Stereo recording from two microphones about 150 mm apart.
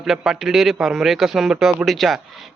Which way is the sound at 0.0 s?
Centre (ahead or behind).